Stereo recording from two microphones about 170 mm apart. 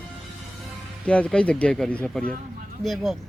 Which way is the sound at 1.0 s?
5° left (ahead or behind).